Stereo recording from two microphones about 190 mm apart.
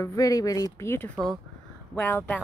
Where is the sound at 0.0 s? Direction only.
20° left (ahead or behind).